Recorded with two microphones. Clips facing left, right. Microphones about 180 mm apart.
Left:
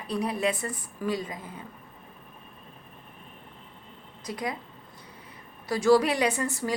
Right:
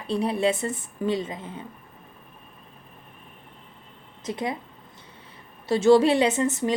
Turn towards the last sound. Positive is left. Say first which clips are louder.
# right 5 dB
turn(degrees=-20)  # may be behind; listen again after turning